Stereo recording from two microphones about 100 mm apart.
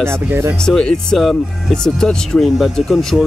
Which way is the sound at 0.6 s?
5° left (ahead or behind).